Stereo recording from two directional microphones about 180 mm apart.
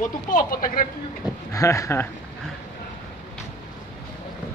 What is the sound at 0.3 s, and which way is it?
Speech, 50° left (ahead or behind).